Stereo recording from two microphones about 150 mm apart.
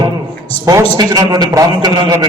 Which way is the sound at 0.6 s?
25° right (ahead or behind).